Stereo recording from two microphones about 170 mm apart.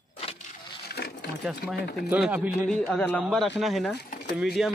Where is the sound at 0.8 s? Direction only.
70° left (ahead or behind).